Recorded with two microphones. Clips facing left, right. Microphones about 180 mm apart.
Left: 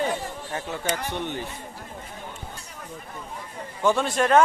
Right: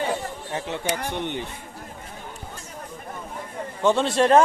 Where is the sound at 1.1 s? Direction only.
20° right (ahead or behind).